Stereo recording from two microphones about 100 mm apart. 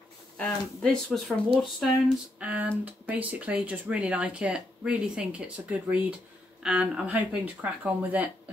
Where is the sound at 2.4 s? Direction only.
15° right (ahead or behind).